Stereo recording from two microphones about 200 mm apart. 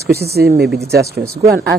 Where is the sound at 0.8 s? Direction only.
15° right (ahead or behind).